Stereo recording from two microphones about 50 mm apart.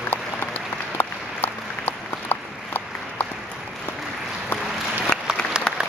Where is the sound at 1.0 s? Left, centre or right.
Left.